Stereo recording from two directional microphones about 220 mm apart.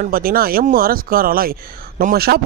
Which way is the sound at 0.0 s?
40° right (ahead or behind).